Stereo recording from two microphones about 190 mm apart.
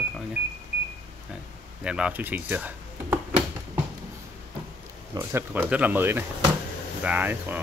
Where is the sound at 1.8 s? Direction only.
5° right (ahead or behind).